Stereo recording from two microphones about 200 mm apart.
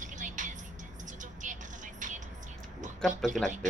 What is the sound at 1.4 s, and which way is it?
Vehicle, 40° right (ahead or behind).